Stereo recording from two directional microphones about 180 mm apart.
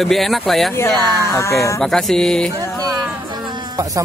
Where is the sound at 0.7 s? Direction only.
15° left (ahead or behind).